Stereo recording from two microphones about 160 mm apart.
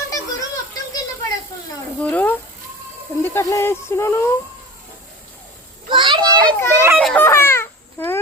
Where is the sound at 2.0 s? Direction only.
10° left (ahead or behind).